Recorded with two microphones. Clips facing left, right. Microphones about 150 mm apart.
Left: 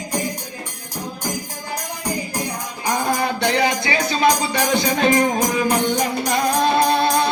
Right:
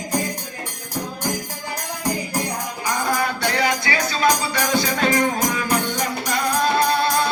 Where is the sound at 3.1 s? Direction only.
25° left (ahead or behind).